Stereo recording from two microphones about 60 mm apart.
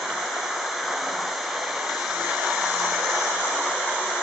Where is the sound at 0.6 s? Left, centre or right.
Centre.